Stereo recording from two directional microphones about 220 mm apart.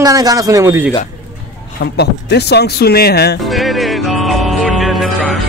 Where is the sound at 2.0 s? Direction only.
50° left (ahead or behind).